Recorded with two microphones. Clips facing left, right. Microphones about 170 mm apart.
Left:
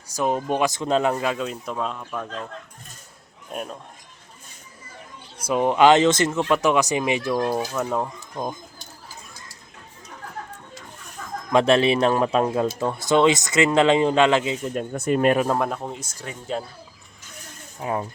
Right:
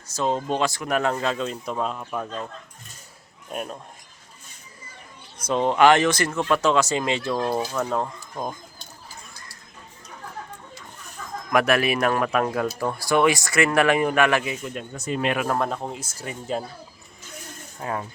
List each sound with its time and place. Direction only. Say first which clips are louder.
0.2 s speech: left 1 dB; 15° left (ahead or behind); by 2.0 s 5° right (ahead or behind)
3.5 s speech: even; centre (ahead or behind)
5.5 s speech: left 1 dB; 15° left (ahead or behind)
11.5 s a man's voice: left 3 dB; 25° left (ahead or behind)
14.6 s speech: left 6 dB; 40° left (ahead or behind)
14.9 s speech: left 6 dB; 55° left (ahead or behind)
15.4 s speech: left 1 dB; 10° left (ahead or behind)
15.8 s speech: even; 5° right (ahead or behind)
17.7 s mechanisms: left 3 dB; 15° left (ahead or behind)